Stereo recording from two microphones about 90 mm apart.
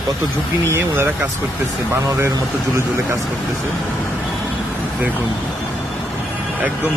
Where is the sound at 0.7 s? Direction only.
25° right (ahead or behind).